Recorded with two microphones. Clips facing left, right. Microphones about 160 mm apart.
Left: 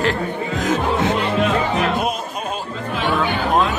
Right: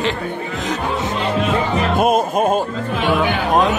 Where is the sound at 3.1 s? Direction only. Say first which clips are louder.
Right 2 dB; 15° right (ahead or behind).